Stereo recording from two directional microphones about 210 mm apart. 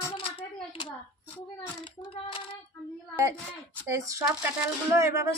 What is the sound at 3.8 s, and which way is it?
Speech, 15° right (ahead or behind).